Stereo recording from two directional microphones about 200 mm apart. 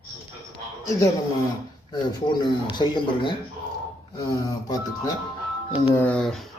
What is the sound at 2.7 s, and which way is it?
Speech, 20° left (ahead or behind).